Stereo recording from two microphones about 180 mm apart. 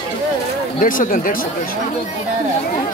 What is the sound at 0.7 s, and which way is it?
Speech, 50° left (ahead or behind).